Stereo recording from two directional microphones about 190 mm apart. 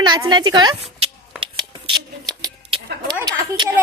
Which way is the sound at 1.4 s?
25° right (ahead or behind).